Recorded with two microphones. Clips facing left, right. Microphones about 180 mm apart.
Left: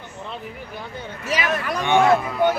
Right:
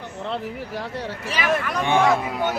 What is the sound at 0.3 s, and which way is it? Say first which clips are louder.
Speech: right 7 dB; 90° right.